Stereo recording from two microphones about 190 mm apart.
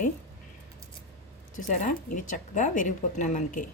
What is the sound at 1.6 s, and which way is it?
A woman's voice, 40° left (ahead or behind).